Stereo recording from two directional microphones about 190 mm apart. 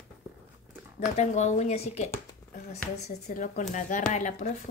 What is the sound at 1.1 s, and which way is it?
Speech, 35° left (ahead or behind).